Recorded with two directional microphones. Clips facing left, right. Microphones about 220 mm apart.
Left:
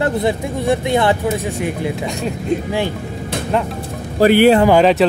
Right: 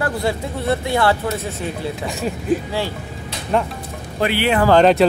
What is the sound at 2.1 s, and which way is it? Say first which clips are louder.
Speech: left 1 dB; centre (ahead or behind).